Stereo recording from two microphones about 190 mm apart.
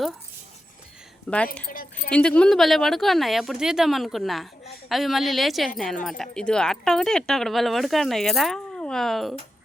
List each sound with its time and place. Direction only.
1.3 s speech: 5° left (ahead or behind)